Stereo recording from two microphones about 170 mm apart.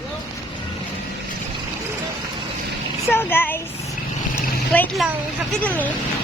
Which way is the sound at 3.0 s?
15° left (ahead or behind).